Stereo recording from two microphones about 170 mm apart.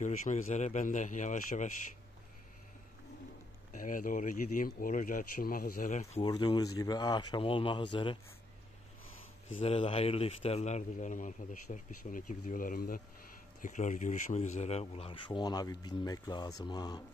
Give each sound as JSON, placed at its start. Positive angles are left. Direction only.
{"t": 0.0, "sound": "a man's voice", "side_deg": 45}
{"t": 3.7, "sound": "a man's voice", "side_deg": 50}
{"t": 6.2, "sound": "speech", "side_deg": 25}
{"t": 9.6, "sound": "a man's voice", "side_deg": 35}
{"t": 13.6, "sound": "speech", "side_deg": 45}